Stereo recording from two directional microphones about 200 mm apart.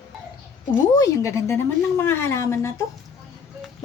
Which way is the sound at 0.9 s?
15° left (ahead or behind).